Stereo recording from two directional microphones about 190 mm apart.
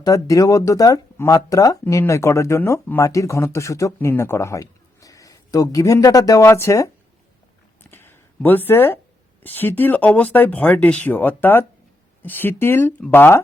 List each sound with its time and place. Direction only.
0.0 s speech: 15° left (ahead or behind)
7.9 s a sound: 10° left (ahead or behind)
9.4 s speech: 10° left (ahead or behind)